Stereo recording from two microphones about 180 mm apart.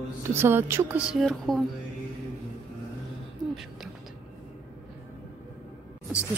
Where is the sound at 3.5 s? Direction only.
Centre (ahead or behind).